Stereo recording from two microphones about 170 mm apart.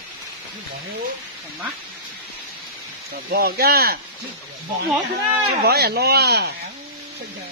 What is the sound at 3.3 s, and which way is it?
Speech, 65° right (ahead or behind).